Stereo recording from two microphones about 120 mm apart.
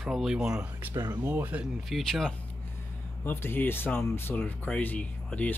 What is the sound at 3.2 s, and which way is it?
Speech, 15° left (ahead or behind).